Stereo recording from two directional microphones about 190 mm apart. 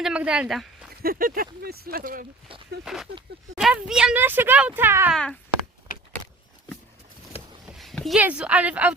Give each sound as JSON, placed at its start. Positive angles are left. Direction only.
{"t": 0.0, "sound": "speech", "side_deg": -5}
{"t": 1.0, "sound": "speech", "side_deg": -50}
{"t": 2.8, "sound": "speech", "side_deg": 0}
{"t": 5.1, "sound": "speech", "side_deg": 5}
{"t": 7.7, "sound": "speech", "side_deg": 0}